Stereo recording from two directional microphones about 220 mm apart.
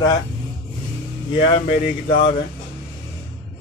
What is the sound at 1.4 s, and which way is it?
Speech, 25° left (ahead or behind).